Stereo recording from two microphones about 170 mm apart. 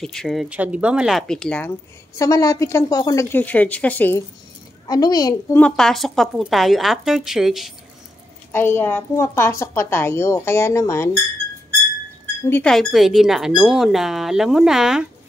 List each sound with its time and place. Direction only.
0.0 s speech: 5° left (ahead or behind)
2.1 s a woman's voice: 20° left (ahead or behind)
4.8 s a child's voice: 25° left (ahead or behind)
5.6 s speech: 5° left (ahead or behind)
8.5 s a woman's voice: 15° left (ahead or behind)
12.4 s a woman's voice: 10° left (ahead or behind)
12.7 s speech: centre (ahead or behind)